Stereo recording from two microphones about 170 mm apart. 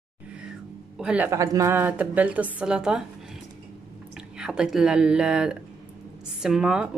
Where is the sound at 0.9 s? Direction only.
5° right (ahead or behind).